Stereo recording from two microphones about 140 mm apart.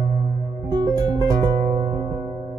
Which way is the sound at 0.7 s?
30° right (ahead or behind).